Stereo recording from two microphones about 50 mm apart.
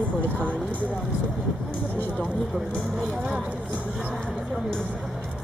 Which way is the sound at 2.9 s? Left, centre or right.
Centre.